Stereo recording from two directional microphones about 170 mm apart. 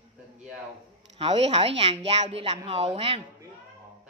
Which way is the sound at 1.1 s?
35° right (ahead or behind).